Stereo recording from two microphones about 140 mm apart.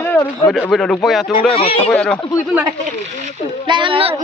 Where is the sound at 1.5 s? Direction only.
45° left (ahead or behind).